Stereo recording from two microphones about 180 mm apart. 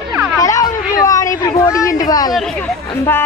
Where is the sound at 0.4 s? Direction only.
20° left (ahead or behind).